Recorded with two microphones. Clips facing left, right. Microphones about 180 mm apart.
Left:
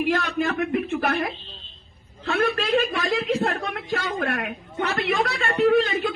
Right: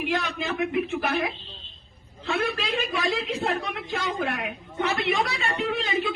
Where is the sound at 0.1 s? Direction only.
50° left (ahead or behind).